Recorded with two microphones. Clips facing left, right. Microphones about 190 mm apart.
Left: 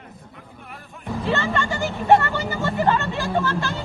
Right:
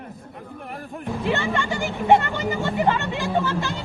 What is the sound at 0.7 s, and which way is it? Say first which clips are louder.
Music: right 9 dB; 55° right (ahead or behind).